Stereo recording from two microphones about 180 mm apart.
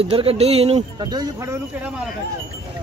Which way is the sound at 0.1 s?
30° right (ahead or behind).